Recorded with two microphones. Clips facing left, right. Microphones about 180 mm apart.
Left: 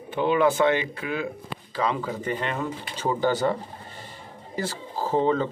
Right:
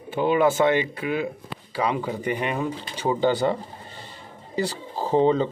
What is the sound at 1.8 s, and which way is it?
Speech, 15° right (ahead or behind).